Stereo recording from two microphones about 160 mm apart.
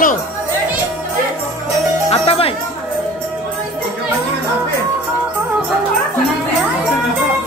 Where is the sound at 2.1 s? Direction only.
35° left (ahead or behind).